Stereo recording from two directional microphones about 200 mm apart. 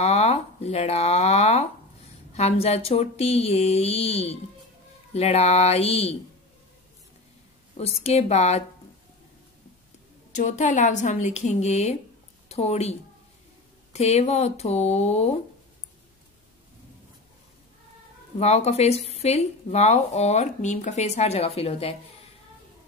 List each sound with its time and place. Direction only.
0.0 s speech: 30° left (ahead or behind)
7.7 s speech: 30° left (ahead or behind)
10.3 s a woman's voice: 40° left (ahead or behind)
13.9 s speech: 35° left (ahead or behind)
18.4 s speech: 30° left (ahead or behind)